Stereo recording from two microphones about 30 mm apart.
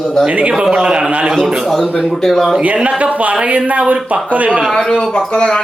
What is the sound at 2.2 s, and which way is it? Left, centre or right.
Speech, centre.